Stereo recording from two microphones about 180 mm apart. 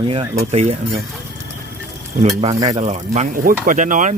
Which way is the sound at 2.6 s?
35° right (ahead or behind).